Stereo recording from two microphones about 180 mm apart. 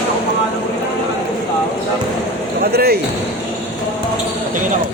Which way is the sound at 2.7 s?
65° right (ahead or behind).